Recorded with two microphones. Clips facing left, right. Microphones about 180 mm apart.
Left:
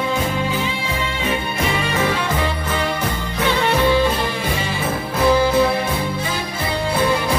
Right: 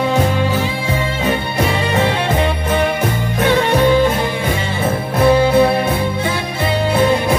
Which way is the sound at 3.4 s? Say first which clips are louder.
Right 4 dB; 55° right (ahead or behind).